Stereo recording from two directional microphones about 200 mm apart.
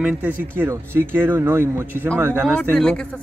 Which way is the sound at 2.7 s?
5° left (ahead or behind).